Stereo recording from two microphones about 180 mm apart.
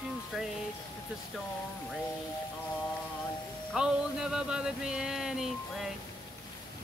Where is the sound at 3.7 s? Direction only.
5° right (ahead or behind).